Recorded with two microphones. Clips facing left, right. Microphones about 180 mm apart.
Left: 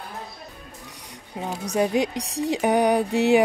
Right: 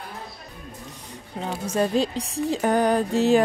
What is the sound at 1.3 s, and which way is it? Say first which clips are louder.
Speech: even; 15° left (ahead or behind).